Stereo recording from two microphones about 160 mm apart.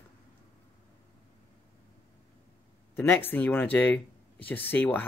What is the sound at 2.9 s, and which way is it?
Speech, 15° left (ahead or behind).